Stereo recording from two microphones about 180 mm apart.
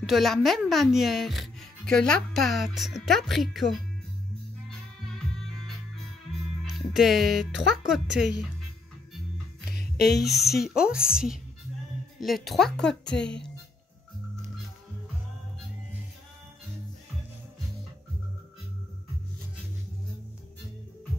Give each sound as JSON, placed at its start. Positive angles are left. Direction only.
{"t": 0.0, "sound": "speech", "side_deg": 0}
{"t": 6.6, "sound": "speech", "side_deg": 0}
{"t": 9.8, "sound": "music", "side_deg": 65}
{"t": 10.4, "sound": "speech", "side_deg": 60}
{"t": 10.7, "sound": "speech", "side_deg": -5}